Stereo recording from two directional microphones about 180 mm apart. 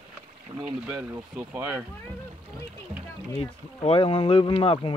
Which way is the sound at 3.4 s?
30° left (ahead or behind).